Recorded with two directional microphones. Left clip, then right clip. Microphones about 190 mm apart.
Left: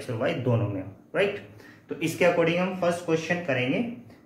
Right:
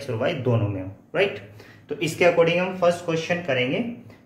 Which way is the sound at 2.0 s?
40° right (ahead or behind).